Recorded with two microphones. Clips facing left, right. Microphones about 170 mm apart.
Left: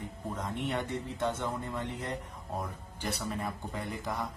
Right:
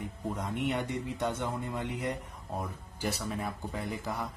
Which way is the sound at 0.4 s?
10° right (ahead or behind).